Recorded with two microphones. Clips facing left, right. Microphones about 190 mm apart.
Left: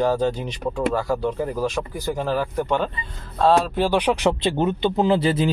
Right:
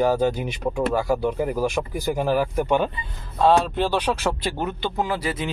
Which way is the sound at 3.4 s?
5° left (ahead or behind).